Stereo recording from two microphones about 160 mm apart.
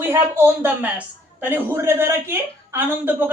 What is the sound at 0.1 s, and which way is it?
A man's voice, 15° right (ahead or behind).